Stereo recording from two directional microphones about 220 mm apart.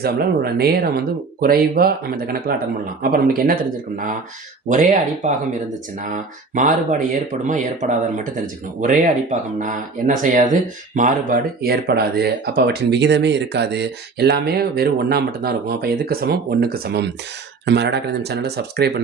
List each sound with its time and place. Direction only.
0.0 s speech: 45° right (ahead or behind)
6.5 s speech: 35° right (ahead or behind)